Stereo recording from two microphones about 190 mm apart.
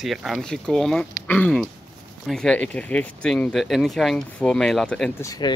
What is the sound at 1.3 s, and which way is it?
Speech, 5° left (ahead or behind).